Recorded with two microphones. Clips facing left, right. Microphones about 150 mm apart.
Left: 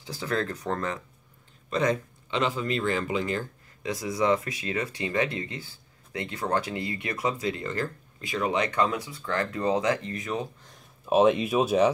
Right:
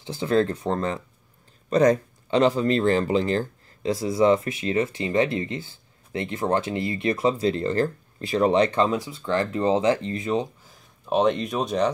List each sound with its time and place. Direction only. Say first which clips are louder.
0.0 s speech: right 8 dB; 25° right (ahead or behind)
1.7 s speech: right 7 dB; 40° right (ahead or behind)
10.6 s speech: left 1 dB; centre (ahead or behind)